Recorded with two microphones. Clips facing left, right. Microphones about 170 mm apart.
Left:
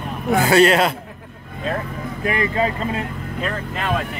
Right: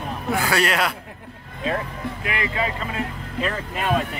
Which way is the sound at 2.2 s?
35° left (ahead or behind).